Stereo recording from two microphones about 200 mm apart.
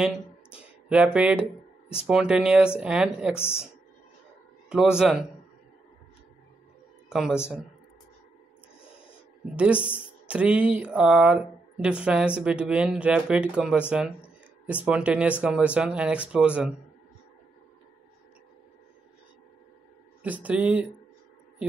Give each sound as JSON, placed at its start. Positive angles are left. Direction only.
{"t": 0.0, "sound": "a sound", "side_deg": -5}
{"t": 1.9, "sound": "speech", "side_deg": -5}
{"t": 4.6, "sound": "speech", "side_deg": -5}
{"t": 7.3, "sound": "speech", "side_deg": 10}
{"t": 9.8, "sound": "speech", "side_deg": -5}
{"t": 20.2, "sound": "speech", "side_deg": -5}